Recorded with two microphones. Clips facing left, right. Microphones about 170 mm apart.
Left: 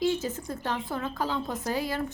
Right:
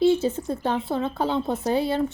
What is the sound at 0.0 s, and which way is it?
Speech, 30° right (ahead or behind).